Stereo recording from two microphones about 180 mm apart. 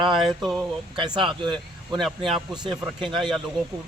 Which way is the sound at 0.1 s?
Centre (ahead or behind).